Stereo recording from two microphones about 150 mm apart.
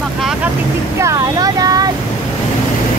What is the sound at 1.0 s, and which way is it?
Speech, 20° right (ahead or behind).